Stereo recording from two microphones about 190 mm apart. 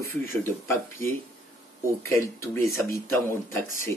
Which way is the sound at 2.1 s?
15° left (ahead or behind).